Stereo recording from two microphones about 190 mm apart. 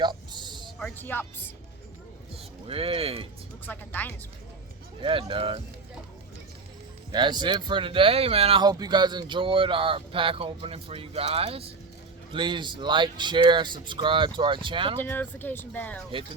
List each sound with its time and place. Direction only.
0.0 s a sound: 25° right (ahead or behind)
0.8 s speech: 5° left (ahead or behind)
2.3 s speech: 30° right (ahead or behind)
3.7 s speech: 10° left (ahead or behind)
5.0 s speech: 25° right (ahead or behind)
7.1 s speech: 25° right (ahead or behind)
15.0 s speech: 10° left (ahead or behind)